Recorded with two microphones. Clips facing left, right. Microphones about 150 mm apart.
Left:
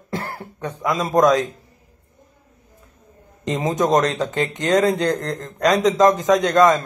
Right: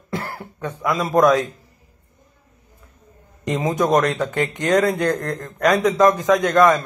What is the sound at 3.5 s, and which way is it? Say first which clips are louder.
Speech: even; 20° left (ahead or behind).